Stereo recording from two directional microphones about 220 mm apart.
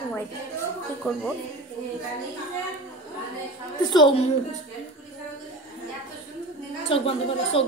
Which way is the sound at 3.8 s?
20° left (ahead or behind).